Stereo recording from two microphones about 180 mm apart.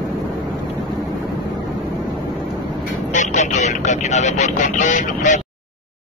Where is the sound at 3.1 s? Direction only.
40° left (ahead or behind).